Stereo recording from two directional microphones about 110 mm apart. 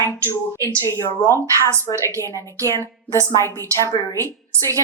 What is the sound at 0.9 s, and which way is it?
Speech, 25° left (ahead or behind).